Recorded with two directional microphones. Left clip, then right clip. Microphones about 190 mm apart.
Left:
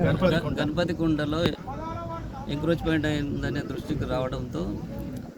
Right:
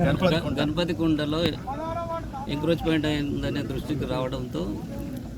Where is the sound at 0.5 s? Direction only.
10° left (ahead or behind).